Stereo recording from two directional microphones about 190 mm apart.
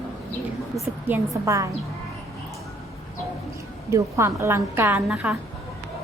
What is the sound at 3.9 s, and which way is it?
A woman's voice, 15° right (ahead or behind).